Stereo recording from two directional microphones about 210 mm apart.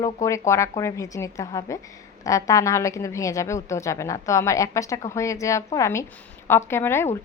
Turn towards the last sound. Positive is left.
turn(degrees=10)  # may be behind; listen again after turning